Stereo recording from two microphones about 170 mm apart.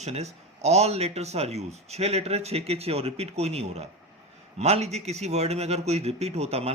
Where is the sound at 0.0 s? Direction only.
40° right (ahead or behind).